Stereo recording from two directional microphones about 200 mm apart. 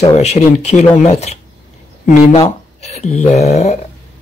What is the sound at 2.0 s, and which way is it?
Speech, 40° left (ahead or behind).